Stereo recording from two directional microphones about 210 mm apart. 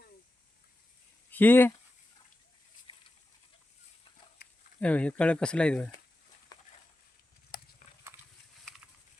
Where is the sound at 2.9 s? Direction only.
25° left (ahead or behind).